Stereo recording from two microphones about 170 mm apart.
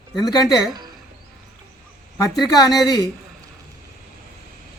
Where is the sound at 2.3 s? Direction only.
20° left (ahead or behind).